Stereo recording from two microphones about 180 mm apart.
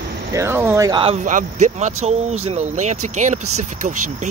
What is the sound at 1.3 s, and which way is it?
Speech, 45° right (ahead or behind).